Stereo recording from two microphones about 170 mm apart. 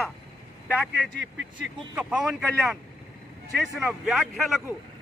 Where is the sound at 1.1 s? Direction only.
90° right.